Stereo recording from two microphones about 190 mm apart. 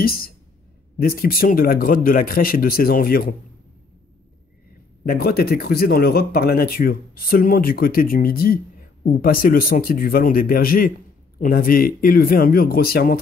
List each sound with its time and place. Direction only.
0.0 s speech: 50° left (ahead or behind)
5.0 s speech: 55° left (ahead or behind)